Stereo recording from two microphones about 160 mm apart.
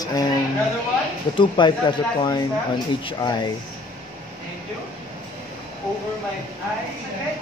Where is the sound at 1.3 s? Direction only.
30° left (ahead or behind).